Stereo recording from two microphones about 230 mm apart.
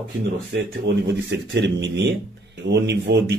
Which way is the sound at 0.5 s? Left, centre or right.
Right.